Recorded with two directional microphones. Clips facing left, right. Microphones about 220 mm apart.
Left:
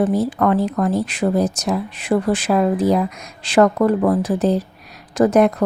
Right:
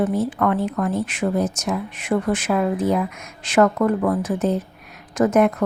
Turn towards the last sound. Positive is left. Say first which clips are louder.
# left 3 dB
turn(degrees=35)  # may be behind; listen again after turning